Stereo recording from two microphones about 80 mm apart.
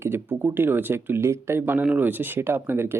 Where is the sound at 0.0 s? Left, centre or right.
Right.